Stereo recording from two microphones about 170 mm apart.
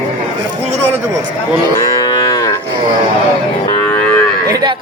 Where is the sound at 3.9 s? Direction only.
10° left (ahead or behind).